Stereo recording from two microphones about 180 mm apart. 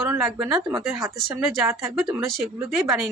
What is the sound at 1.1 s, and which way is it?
Speech, centre (ahead or behind).